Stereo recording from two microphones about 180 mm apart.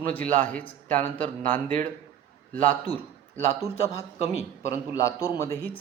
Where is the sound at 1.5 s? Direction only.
45° right (ahead or behind).